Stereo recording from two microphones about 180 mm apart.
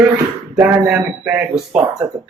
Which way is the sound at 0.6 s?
10° right (ahead or behind).